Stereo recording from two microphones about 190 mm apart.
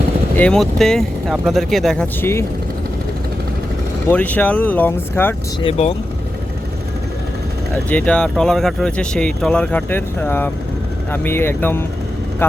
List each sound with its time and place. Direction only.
0.3 s speech: 5° left (ahead or behind)
4.1 s speech: 10° left (ahead or behind)
5.6 s speech: 30° left (ahead or behind)
7.9 s speech: 5° left (ahead or behind)